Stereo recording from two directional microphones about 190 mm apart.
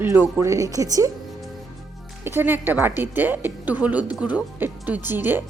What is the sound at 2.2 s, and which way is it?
A woman's voice, 10° right (ahead or behind).